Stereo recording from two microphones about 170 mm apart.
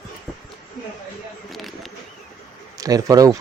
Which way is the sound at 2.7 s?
20° right (ahead or behind).